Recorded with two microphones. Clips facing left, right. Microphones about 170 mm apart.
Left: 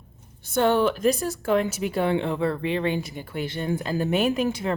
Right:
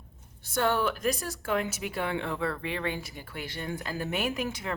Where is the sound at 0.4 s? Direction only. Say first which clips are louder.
Left 7 dB; 25° left (ahead or behind).